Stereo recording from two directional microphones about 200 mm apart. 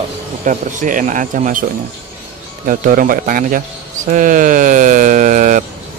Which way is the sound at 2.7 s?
45° right (ahead or behind).